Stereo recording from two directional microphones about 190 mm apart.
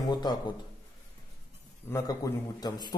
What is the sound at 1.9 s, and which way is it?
A man's voice, 15° left (ahead or behind).